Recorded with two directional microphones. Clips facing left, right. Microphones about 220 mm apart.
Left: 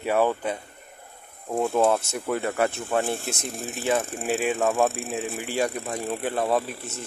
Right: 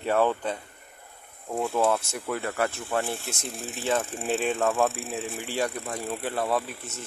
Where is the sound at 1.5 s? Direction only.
25° left (ahead or behind).